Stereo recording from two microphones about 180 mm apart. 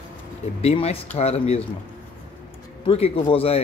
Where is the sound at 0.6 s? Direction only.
35° left (ahead or behind).